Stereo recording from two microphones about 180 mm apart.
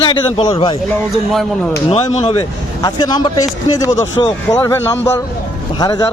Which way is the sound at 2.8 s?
20° left (ahead or behind).